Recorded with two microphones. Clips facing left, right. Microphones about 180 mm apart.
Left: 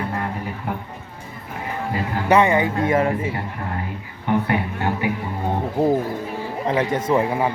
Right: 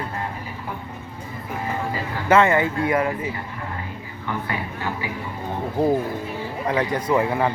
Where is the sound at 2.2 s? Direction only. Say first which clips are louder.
Even; 15° left (ahead or behind).